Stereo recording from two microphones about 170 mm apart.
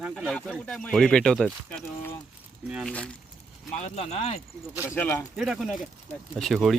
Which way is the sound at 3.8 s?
40° left (ahead or behind).